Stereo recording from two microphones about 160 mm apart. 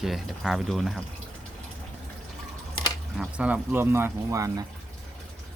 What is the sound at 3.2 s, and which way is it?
Speech, 10° right (ahead or behind).